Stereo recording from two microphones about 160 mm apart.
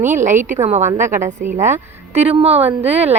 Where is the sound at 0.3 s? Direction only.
50° right (ahead or behind).